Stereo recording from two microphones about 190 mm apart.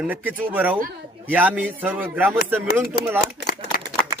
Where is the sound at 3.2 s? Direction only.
50° left (ahead or behind).